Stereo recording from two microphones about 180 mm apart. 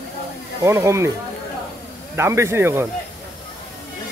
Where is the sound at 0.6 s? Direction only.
15° right (ahead or behind).